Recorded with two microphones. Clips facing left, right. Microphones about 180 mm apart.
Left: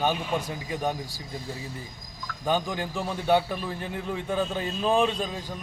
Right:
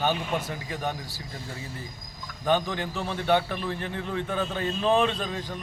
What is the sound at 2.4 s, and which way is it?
A man's voice, 10° left (ahead or behind).